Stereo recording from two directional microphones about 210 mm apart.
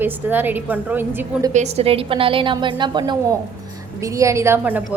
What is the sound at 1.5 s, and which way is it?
A woman's voice, 30° right (ahead or behind).